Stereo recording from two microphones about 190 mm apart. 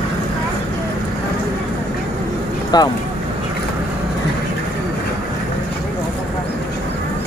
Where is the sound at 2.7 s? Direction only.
20° left (ahead or behind).